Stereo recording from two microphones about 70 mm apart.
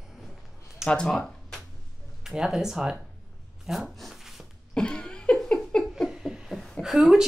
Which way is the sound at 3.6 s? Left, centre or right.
Centre.